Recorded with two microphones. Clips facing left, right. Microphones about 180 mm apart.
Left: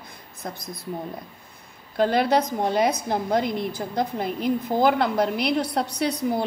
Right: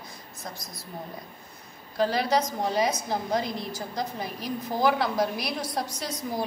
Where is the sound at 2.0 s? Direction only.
55° left (ahead or behind).